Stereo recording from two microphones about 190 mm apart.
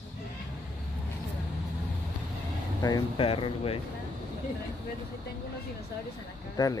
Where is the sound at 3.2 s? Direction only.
30° left (ahead or behind).